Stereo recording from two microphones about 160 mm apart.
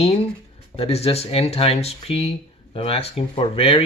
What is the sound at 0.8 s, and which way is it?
Speech, 40° left (ahead or behind).